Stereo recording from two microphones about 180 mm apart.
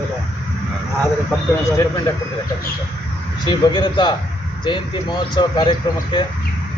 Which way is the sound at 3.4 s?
25° left (ahead or behind).